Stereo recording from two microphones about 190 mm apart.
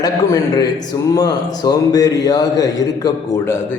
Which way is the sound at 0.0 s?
20° left (ahead or behind).